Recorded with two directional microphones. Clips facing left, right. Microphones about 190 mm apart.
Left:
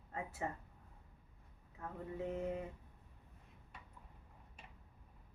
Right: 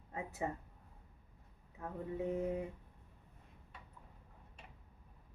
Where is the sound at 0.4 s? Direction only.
15° right (ahead or behind).